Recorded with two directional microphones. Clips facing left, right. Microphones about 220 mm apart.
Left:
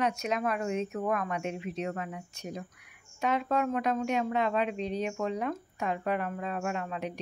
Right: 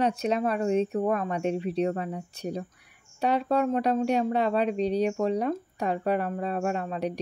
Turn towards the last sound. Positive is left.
turn(degrees=-35)  # may be behind; listen again after turning